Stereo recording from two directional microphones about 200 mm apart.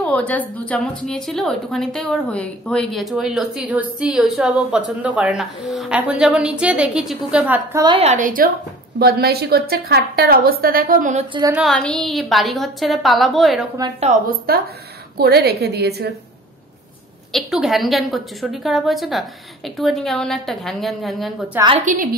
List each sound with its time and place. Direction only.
0.0 s a woman's voice: 5° left (ahead or behind); by 7.8 s 10° right (ahead or behind)
7.8 s a woman's voice: 30° right (ahead or behind)
9.0 s a woman's voice: 50° right (ahead or behind)
11.5 s a woman's voice: centre (ahead or behind)
13.9 s a woman's voice: 40° right (ahead or behind)
17.3 s a woman's voice: centre (ahead or behind)
21.5 s a woman's voice: 25° right (ahead or behind)
21.8 s a woman's voice: 45° right (ahead or behind)